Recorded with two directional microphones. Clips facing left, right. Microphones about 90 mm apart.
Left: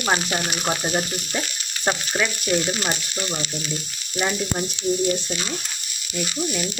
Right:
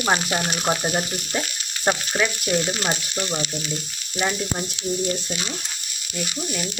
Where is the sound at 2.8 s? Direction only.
15° right (ahead or behind).